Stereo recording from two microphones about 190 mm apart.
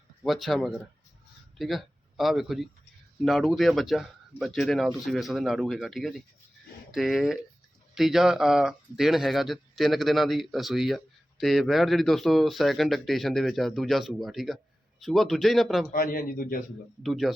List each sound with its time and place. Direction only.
0.3 s speech: centre (ahead or behind)
15.9 s speech: 50° left (ahead or behind)
17.0 s speech: centre (ahead or behind)